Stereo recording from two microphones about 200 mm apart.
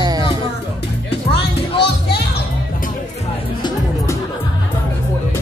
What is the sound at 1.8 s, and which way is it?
Music, 55° left (ahead or behind).